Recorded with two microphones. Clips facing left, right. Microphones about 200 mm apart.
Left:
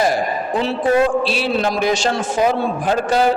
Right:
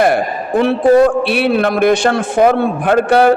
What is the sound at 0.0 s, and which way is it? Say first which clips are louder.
A man's voice: right 4 dB; 60° right (ahead or behind).